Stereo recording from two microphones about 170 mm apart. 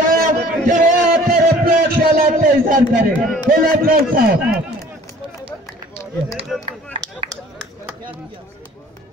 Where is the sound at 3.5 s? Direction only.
55° right (ahead or behind).